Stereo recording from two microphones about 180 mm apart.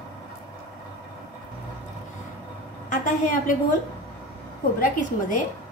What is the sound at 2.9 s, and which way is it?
Speech, 45° left (ahead or behind).